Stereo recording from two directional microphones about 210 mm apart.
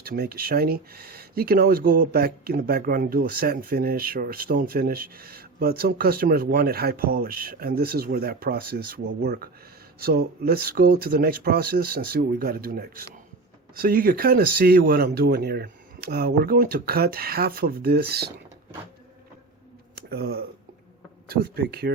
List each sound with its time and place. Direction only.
0.0 s speech: 45° right (ahead or behind)
20.0 s speech: 50° right (ahead or behind)